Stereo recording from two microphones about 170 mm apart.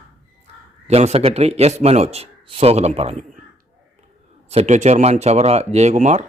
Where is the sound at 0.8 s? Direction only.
40° right (ahead or behind).